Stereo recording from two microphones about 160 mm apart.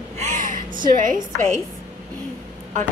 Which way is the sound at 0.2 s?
50° right (ahead or behind).